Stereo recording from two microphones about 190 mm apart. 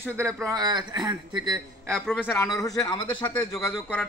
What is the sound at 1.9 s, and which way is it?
Speech, 5° left (ahead or behind).